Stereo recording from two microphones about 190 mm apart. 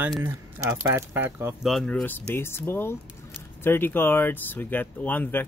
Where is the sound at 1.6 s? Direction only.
5° left (ahead or behind).